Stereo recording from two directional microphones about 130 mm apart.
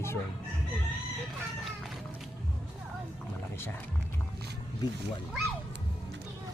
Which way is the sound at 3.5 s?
20° left (ahead or behind).